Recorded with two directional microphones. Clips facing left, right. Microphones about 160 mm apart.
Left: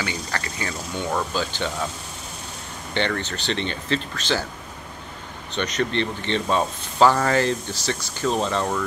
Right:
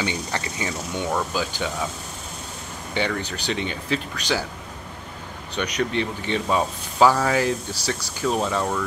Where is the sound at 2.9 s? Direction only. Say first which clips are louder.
Left 1 dB; 10° right (ahead or behind).